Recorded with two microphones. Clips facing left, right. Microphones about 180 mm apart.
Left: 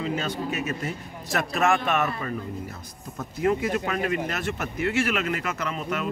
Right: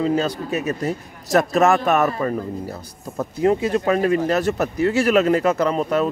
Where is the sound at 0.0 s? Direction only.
35° right (ahead or behind).